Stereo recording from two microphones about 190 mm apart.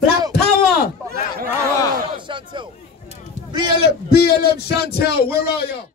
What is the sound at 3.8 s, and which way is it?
Speech, 55° left (ahead or behind).